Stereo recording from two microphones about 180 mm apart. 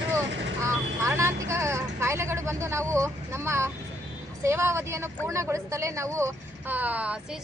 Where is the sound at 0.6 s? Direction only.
15° right (ahead or behind).